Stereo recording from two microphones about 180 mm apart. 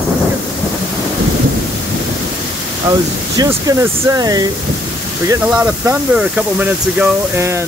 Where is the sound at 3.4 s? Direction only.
15° right (ahead or behind).